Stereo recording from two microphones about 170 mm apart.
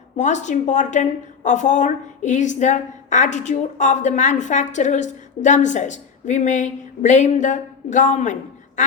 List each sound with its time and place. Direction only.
0.2 s a woman's voice: 45° left (ahead or behind)